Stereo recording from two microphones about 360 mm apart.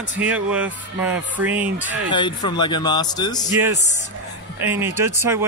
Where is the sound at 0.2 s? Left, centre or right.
Centre.